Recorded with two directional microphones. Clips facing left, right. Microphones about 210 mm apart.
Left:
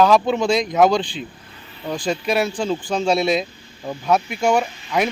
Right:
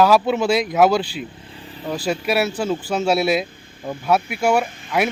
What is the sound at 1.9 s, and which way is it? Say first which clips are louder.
Speech: even; 5° right (ahead or behind).